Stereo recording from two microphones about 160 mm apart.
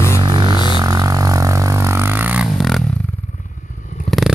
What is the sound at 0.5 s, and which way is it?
Music, 30° left (ahead or behind).